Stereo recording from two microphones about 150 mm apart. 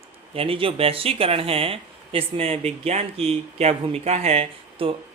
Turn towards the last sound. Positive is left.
turn(degrees=-40)  # may be behind; listen again after turning